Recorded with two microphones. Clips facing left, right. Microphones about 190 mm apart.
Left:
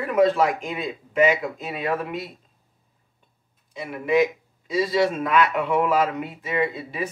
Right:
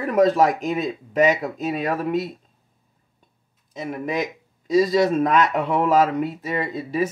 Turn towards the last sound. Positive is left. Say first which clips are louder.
# right 3 dB
turn(degrees=-40)  # may be behind; listen again after turning